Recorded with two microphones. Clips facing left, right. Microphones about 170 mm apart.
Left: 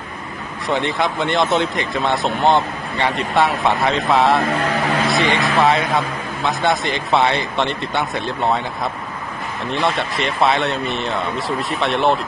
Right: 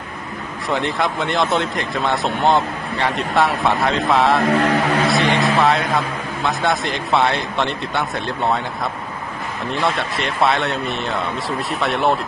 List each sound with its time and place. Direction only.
0.7 s speech: centre (ahead or behind)
9.8 s speech: centre (ahead or behind)